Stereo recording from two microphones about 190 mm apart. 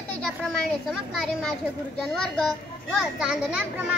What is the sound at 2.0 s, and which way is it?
A child's voice, centre (ahead or behind).